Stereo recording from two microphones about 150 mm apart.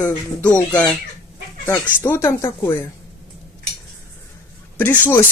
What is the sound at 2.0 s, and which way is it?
Speech, 15° left (ahead or behind).